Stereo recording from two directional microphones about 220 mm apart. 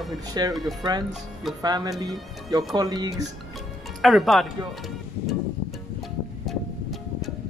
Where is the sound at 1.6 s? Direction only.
15° right (ahead or behind).